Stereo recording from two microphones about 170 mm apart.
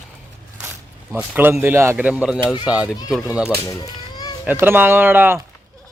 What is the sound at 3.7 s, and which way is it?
Cat, 20° left (ahead or behind).